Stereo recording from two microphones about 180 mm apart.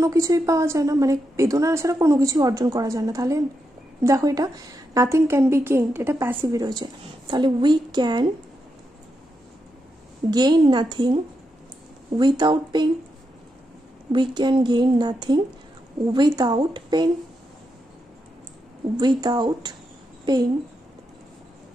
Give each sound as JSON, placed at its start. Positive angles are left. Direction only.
{"t": 0.0, "sound": "a woman's voice", "side_deg": -15}
{"t": 10.3, "sound": "a woman's voice", "side_deg": -25}
{"t": 12.2, "sound": "a woman's voice", "side_deg": -25}
{"t": 14.1, "sound": "a woman's voice", "side_deg": -25}
{"t": 18.9, "sound": "a woman's voice", "side_deg": -25}